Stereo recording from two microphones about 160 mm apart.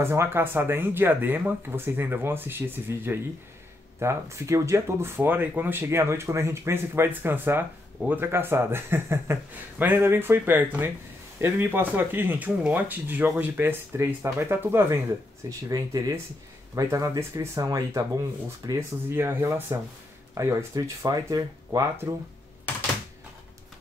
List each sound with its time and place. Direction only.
0.0 s speech: 15° right (ahead or behind)